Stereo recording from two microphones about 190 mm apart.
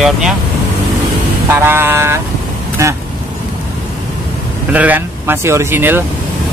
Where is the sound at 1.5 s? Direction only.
10° right (ahead or behind).